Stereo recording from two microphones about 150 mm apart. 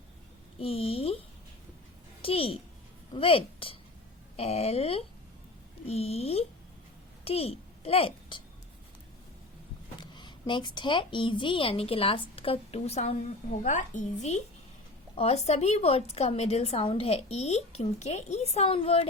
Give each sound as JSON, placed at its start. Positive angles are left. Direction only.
{"t": 0.6, "sound": "a woman's voice", "side_deg": 40}
{"t": 2.2, "sound": "a woman's voice", "side_deg": 40}
{"t": 10.0, "sound": "a sound", "side_deg": 30}
{"t": 10.8, "sound": "a woman's voice", "side_deg": 35}